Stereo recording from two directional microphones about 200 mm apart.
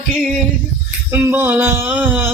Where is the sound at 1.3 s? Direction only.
10° right (ahead or behind).